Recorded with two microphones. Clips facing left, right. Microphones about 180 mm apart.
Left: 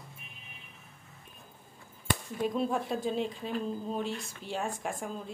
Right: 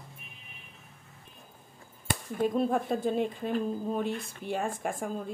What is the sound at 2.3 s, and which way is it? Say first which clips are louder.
Speech: right 4 dB; 50° right (ahead or behind).